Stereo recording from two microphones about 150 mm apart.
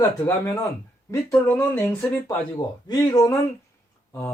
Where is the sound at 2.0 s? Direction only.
15° left (ahead or behind).